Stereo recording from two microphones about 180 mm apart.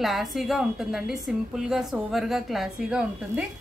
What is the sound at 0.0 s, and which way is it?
A woman's voice, centre (ahead or behind).